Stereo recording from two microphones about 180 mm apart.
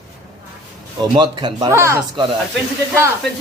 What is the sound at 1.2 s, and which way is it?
Speech, 25° right (ahead or behind).